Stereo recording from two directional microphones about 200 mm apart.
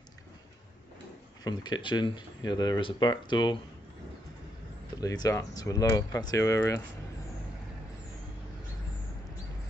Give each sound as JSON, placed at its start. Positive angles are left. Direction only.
{"t": 1.4, "sound": "speech", "side_deg": 20}
{"t": 5.0, "sound": "speech", "side_deg": 20}